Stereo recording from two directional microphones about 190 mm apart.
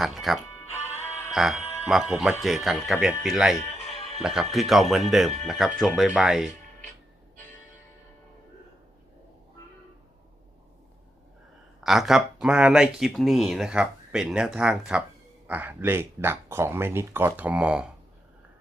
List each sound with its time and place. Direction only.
0.0 s speech: centre (ahead or behind)
0.7 s music: 10° left (ahead or behind)
1.3 s speech: centre (ahead or behind)
11.8 s speech: centre (ahead or behind)